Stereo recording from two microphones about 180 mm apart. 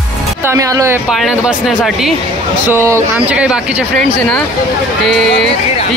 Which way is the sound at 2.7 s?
15° right (ahead or behind).